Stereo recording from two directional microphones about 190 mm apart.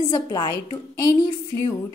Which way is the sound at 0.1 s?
20° left (ahead or behind).